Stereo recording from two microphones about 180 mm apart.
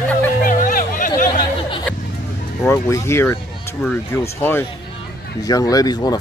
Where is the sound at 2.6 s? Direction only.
15° left (ahead or behind).